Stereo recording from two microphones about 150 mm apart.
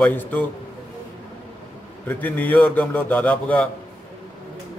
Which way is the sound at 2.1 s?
10° left (ahead or behind).